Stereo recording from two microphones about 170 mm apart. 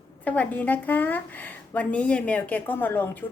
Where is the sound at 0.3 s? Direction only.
10° left (ahead or behind).